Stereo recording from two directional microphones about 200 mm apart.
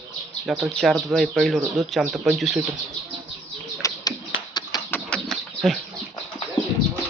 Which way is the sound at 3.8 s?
15° left (ahead or behind).